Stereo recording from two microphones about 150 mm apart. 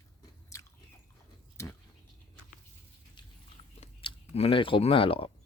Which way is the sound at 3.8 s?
40° left (ahead or behind).